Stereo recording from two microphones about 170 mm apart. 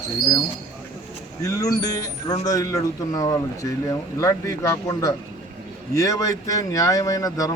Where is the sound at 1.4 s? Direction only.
20° left (ahead or behind).